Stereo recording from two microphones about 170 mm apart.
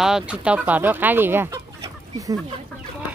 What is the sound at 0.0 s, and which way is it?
Speech, 5° right (ahead or behind).